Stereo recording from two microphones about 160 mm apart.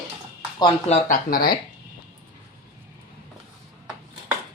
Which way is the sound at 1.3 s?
70° left (ahead or behind).